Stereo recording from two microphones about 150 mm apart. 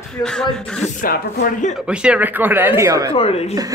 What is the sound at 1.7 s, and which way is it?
Speech, 5° right (ahead or behind).